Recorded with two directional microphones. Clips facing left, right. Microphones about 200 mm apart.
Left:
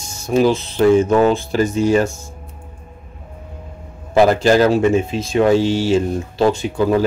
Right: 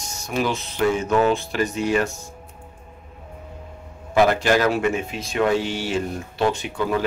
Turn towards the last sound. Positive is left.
turn(degrees=35)  # may be behind; listen again after turning